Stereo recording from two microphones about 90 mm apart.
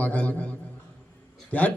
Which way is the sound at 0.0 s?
15° left (ahead or behind).